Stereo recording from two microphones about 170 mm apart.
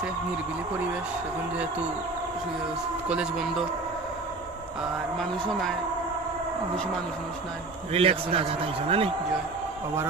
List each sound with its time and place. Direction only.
3.1 s speech: 5° right (ahead or behind)
5.2 s speech: centre (ahead or behind)
7.9 s a man's voice: 35° right (ahead or behind)